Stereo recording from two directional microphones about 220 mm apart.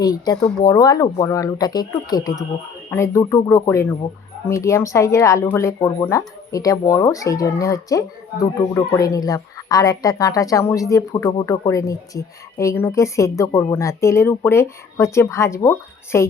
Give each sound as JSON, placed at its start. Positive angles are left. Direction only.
{"t": 0.0, "sound": "speech", "side_deg": 15}